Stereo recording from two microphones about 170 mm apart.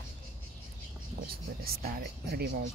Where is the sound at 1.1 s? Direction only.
60° right (ahead or behind).